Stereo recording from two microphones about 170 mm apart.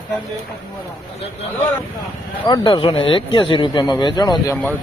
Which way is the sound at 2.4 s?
25° left (ahead or behind).